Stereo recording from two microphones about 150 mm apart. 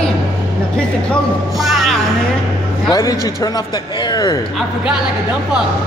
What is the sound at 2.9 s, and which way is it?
Speech, 20° left (ahead or behind).